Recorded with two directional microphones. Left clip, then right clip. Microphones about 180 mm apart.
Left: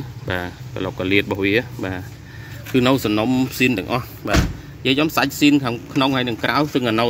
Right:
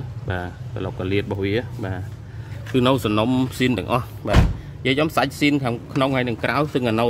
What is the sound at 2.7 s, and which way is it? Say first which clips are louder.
Speech: left 1 dB; 10° right (ahead or behind).